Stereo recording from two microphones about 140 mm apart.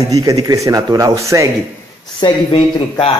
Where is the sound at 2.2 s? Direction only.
40° left (ahead or behind).